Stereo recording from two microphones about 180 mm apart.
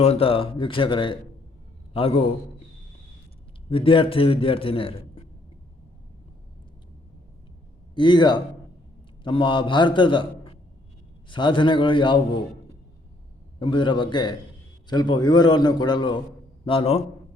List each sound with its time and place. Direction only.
0.0 s a man's voice: 35° left (ahead or behind)
3.7 s a man's voice: 30° left (ahead or behind)
7.9 s a man's voice: 25° left (ahead or behind)
13.6 s a man's voice: 25° left (ahead or behind)